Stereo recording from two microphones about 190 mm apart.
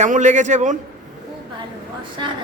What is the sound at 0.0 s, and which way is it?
Speech, 40° right (ahead or behind).